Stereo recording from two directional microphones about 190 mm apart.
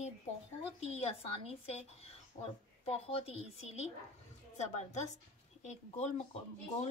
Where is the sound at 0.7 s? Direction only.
35° left (ahead or behind).